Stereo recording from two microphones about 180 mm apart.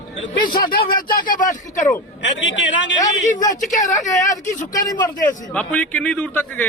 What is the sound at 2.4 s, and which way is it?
Speech, 90° left.